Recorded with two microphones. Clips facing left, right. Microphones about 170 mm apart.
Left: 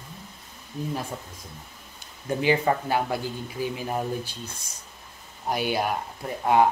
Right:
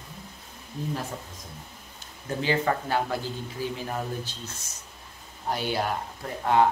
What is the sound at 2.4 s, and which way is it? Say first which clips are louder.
Speech: left 3 dB; 15° left (ahead or behind).